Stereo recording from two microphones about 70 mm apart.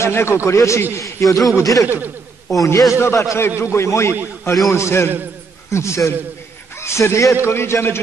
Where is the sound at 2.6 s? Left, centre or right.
Left.